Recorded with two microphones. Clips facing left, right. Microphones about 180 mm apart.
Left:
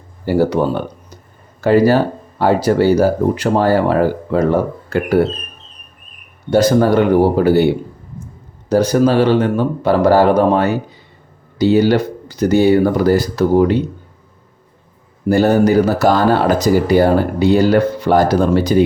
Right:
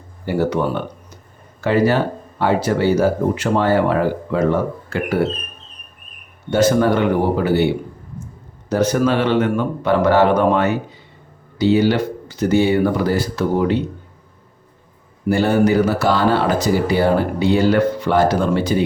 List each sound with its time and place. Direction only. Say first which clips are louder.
0.3 s speech: left 4 dB; 35° left (ahead or behind)
6.5 s speech: left 3 dB; 35° left (ahead or behind)
8.7 s speech: left 4 dB; 35° left (ahead or behind)
15.3 s speech: left 3 dB; 40° left (ahead or behind)